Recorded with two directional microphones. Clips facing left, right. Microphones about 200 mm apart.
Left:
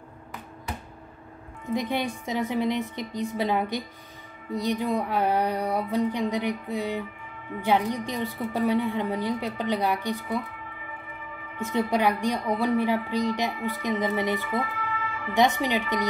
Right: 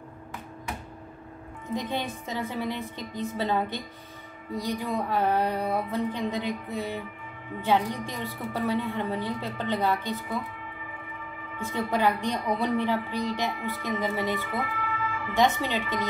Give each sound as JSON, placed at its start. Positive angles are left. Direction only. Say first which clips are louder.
{"t": 1.7, "sound": "a woman's voice", "louder": "left 3 dB", "side_deg": 15}
{"t": 11.6, "sound": "a woman's voice", "louder": "left 2 dB", "side_deg": 15}